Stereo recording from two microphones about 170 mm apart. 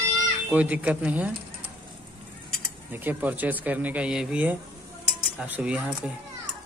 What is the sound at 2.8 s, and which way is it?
Speech, 10° right (ahead or behind).